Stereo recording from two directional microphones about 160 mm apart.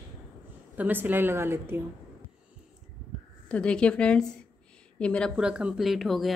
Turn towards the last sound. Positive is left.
turn(degrees=0)  # may be behind; listen again after turning